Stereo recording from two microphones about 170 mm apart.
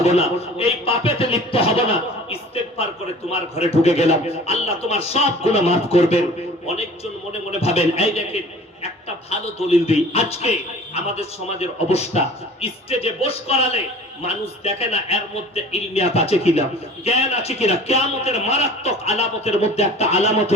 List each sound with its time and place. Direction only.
0.0 s speech: 35° left (ahead or behind)
3.2 s a man's voice: 35° left (ahead or behind)
9.4 s a man's voice: 35° left (ahead or behind)